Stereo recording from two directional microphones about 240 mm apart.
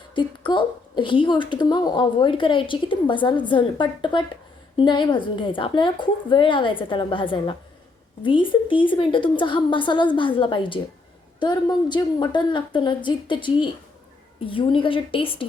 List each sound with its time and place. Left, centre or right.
0.1 s a woman's voice: centre